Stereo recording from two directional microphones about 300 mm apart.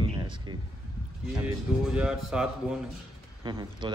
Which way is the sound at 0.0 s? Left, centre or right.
Centre.